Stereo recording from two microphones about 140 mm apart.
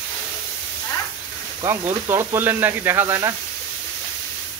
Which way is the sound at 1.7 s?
15° right (ahead or behind).